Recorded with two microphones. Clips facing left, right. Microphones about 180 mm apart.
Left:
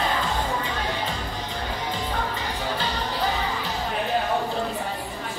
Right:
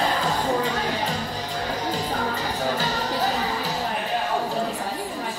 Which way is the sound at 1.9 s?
40° right (ahead or behind).